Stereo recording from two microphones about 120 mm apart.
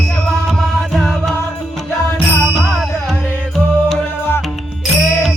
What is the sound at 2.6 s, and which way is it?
Music, 5° left (ahead or behind).